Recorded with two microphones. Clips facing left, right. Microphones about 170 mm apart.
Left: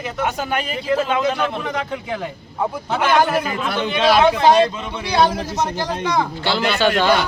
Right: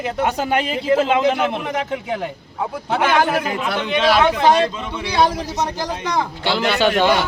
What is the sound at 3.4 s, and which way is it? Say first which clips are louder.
Speech: right 1 dB; 15° right (ahead or behind).